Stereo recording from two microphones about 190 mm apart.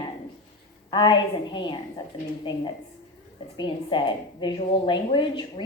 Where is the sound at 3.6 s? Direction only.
25° left (ahead or behind).